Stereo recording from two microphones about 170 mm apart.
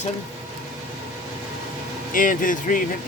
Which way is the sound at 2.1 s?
55° left (ahead or behind).